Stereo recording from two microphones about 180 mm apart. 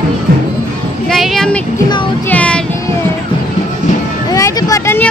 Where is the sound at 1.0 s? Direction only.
Centre (ahead or behind).